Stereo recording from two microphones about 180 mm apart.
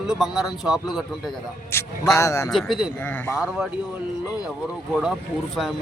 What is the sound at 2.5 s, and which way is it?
Speech, centre (ahead or behind).